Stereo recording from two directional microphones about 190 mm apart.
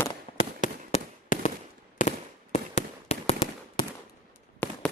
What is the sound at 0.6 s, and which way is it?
Fireworks, 40° left (ahead or behind).